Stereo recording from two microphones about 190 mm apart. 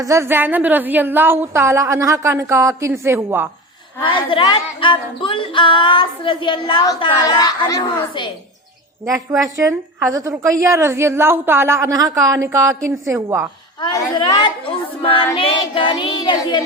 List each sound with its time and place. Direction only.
0.0 s a woman's voice: 15° right (ahead or behind)
4.0 s speech: 25° left (ahead or behind)
9.4 s a woman's voice: 15° right (ahead or behind)
13.7 s speech: 20° left (ahead or behind)